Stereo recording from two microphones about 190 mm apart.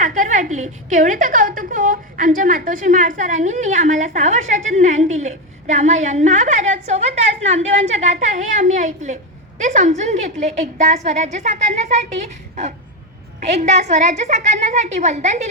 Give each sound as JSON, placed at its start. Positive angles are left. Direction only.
{"t": 0.0, "sound": "a woman's voice", "side_deg": -45}